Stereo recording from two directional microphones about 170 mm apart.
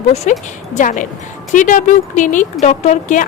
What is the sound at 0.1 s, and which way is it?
Speech, 45° left (ahead or behind).